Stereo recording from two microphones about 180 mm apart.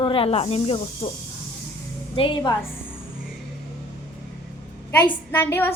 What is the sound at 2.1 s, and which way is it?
Speech, 30° left (ahead or behind).